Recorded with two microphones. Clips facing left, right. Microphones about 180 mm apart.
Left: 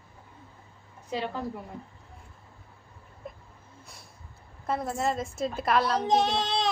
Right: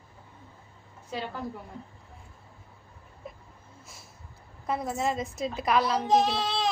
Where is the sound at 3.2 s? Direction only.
Centre (ahead or behind).